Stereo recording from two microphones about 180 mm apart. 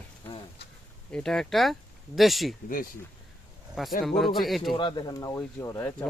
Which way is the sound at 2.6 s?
50° left (ahead or behind).